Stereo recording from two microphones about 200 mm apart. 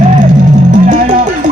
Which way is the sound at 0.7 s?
40° right (ahead or behind).